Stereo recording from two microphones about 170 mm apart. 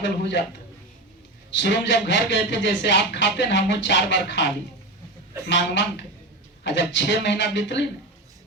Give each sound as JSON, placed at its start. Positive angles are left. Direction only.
{"t": 0.0, "sound": "speech", "side_deg": 90}
{"t": 1.5, "sound": "speech", "side_deg": 90}
{"t": 5.5, "sound": "speech", "side_deg": 90}